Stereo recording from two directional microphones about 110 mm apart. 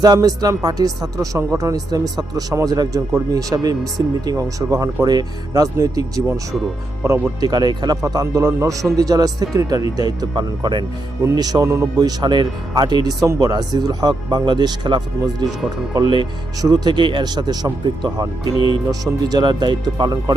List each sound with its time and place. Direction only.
0.0 s speech: 35° right (ahead or behind)
7.4 s speech: 40° right (ahead or behind)
11.9 s speech: 40° right (ahead or behind)